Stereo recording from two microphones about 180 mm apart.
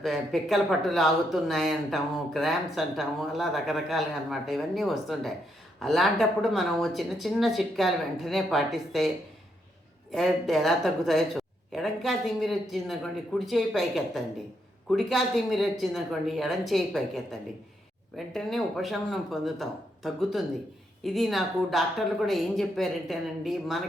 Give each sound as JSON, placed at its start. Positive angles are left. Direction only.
{"t": 0.0, "sound": "speech", "side_deg": 0}
{"t": 10.1, "sound": "speech", "side_deg": 0}
{"t": 18.3, "sound": "speech", "side_deg": 0}